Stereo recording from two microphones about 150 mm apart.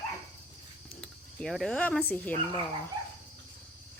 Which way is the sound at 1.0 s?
5° left (ahead or behind).